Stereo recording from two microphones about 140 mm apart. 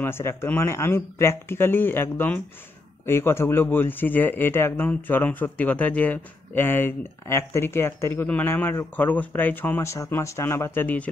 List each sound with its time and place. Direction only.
0.0 s speech: 15° left (ahead or behind)